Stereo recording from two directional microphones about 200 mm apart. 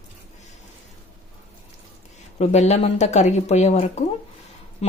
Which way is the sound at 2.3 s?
35° left (ahead or behind).